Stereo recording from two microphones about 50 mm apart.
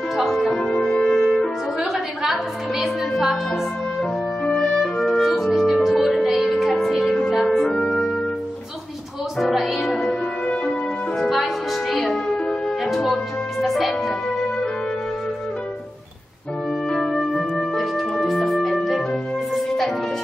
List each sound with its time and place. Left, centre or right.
0.1 s music: centre
0.6 s music: centre
1.8 s a sound: centre
2.3 s music: centre
4.7 s music: centre
5.2 s music: centre
7.6 s music: centre
9.4 s music: centre
10.4 s music: left
11.2 s music: centre
16.9 s music: centre